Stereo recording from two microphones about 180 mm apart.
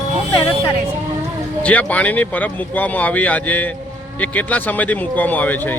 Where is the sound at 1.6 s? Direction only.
10° left (ahead or behind).